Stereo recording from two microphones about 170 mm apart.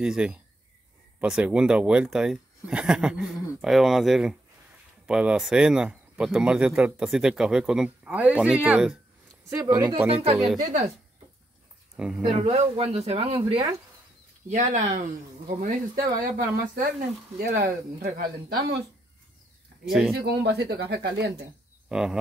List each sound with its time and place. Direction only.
0.0 s speech: 5° right (ahead or behind)
9.5 s speech: 20° right (ahead or behind)
10.0 s speech: 40° right (ahead or behind)
10.6 s speech: 50° right (ahead or behind)
12.2 s speech: 35° right (ahead or behind)
14.5 s speech: 45° right (ahead or behind)
16.0 s speech: 65° right (ahead or behind)
17.4 s speech: 70° right (ahead or behind)
19.9 s speech: centre (ahead or behind)
20.2 s speech: 75° right (ahead or behind)
21.8 s speech: 5° right (ahead or behind)